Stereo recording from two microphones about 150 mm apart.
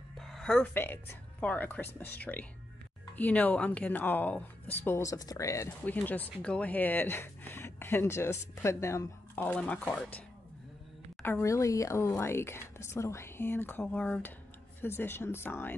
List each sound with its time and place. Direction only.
0.2 s speech: 5° left (ahead or behind)
3.2 s speech: 10° left (ahead or behind)
11.2 s speech: 15° left (ahead or behind)